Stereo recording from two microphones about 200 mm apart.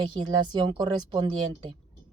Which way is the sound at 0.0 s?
20° right (ahead or behind).